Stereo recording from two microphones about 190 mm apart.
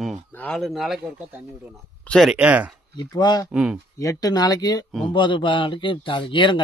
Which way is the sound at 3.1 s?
20° left (ahead or behind).